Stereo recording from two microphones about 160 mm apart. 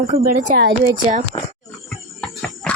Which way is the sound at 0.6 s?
90° right.